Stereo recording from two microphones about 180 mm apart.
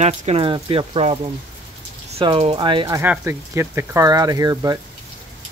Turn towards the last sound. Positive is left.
turn(degrees=-20)  # may be behind; listen again after turning